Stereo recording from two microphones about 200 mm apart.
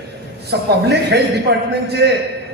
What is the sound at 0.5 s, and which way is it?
A man's voice, 55° right (ahead or behind).